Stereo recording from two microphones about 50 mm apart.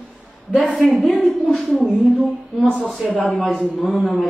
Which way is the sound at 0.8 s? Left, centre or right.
Centre.